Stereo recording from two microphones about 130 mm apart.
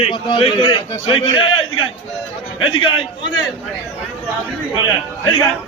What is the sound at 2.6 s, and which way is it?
Speech, 45° left (ahead or behind).